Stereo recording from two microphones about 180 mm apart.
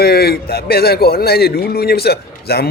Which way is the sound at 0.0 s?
60° left (ahead or behind).